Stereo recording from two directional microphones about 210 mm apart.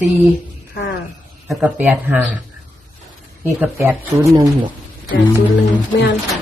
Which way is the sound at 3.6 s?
5° right (ahead or behind).